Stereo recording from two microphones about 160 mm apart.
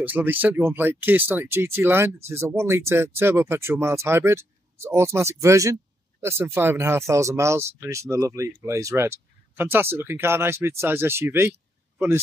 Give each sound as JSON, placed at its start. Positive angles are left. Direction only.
{"t": 0.0, "sound": "speech", "side_deg": -10}